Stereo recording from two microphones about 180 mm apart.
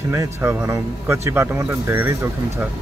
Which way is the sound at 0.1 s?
10° right (ahead or behind).